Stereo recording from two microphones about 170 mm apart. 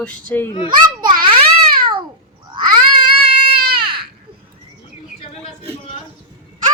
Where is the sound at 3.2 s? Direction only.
35° right (ahead or behind).